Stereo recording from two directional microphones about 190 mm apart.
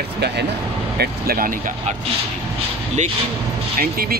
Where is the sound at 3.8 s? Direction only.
50° right (ahead or behind).